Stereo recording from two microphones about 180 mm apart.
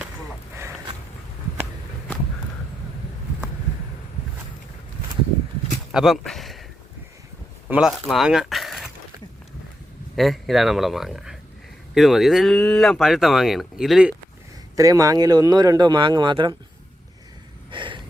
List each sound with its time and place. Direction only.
5.9 s speech: centre (ahead or behind)
7.7 s speech: 5° right (ahead or behind)
10.2 s speech: centre (ahead or behind)
14.8 s speech: 20° right (ahead or behind)
17.7 s vehicle: 25° right (ahead or behind)